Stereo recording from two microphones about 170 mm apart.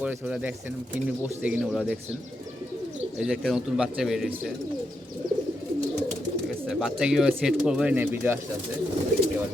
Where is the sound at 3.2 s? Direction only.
Centre (ahead or behind).